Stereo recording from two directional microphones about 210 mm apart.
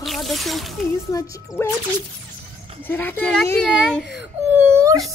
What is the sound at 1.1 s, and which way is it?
Speech, 15° left (ahead or behind).